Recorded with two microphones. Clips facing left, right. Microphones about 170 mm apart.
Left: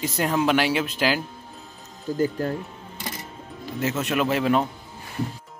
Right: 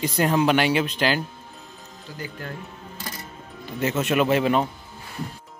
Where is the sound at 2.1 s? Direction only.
45° left (ahead or behind).